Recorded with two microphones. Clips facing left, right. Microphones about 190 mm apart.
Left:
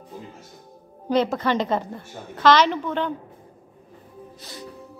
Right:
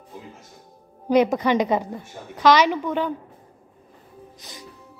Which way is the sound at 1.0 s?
15° right (ahead or behind).